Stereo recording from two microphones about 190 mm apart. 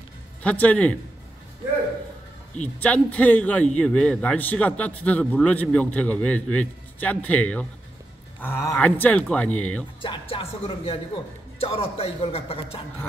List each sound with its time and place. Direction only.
0.4 s a man's voice: 5° left (ahead or behind)
2.8 s a man's voice: 10° left (ahead or behind)
10.0 s speech: 25° left (ahead or behind)